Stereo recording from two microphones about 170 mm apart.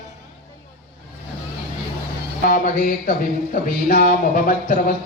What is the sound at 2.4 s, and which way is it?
Speech, 50° left (ahead or behind).